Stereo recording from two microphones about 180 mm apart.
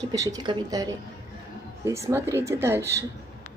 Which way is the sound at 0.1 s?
20° right (ahead or behind).